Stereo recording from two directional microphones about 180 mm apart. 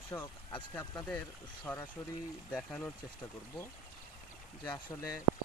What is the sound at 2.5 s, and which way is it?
Speech, 5° left (ahead or behind).